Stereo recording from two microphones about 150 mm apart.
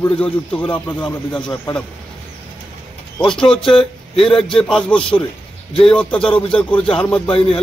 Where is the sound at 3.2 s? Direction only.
5° left (ahead or behind).